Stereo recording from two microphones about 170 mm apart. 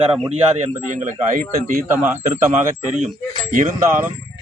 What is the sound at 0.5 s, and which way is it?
Speech, 45° right (ahead or behind).